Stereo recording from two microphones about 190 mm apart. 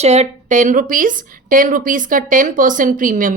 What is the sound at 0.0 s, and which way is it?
A woman's voice, 35° right (ahead or behind).